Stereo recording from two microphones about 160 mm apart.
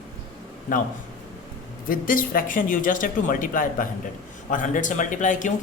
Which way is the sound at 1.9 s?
60° left (ahead or behind).